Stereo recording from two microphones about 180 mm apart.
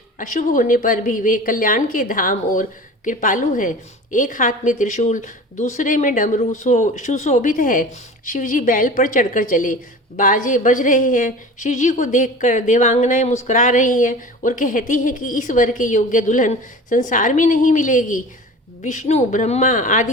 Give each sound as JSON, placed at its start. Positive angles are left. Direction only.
{"t": 0.2, "sound": "a woman's voice", "side_deg": 45}